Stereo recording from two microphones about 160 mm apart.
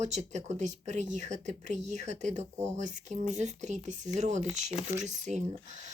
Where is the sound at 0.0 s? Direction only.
45° right (ahead or behind).